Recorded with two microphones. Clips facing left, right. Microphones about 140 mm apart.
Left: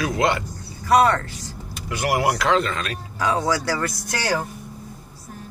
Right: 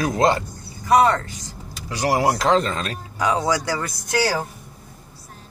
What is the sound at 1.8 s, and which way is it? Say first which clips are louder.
Speech: right 2 dB; 35° right (ahead or behind).